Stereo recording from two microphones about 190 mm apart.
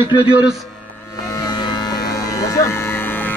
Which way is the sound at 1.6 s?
20° left (ahead or behind).